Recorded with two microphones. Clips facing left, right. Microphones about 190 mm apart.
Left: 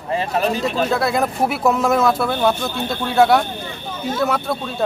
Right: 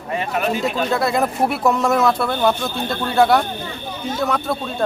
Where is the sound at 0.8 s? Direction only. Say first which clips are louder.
Left 1 dB; centre (ahead or behind).